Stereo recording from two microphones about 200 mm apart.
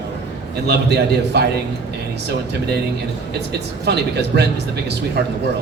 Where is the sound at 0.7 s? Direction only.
55° right (ahead or behind).